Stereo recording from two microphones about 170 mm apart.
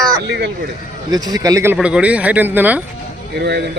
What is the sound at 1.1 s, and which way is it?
Speech, 20° right (ahead or behind).